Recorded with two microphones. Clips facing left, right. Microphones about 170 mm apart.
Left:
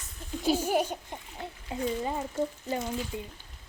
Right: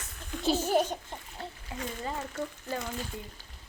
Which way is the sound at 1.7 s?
20° left (ahead or behind).